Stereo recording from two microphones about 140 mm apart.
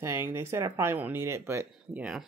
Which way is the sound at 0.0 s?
20° right (ahead or behind).